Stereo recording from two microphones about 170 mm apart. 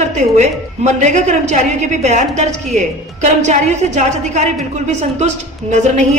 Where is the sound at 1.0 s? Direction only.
45° right (ahead or behind).